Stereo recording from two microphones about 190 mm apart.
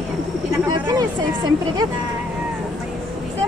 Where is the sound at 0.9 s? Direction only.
20° right (ahead or behind).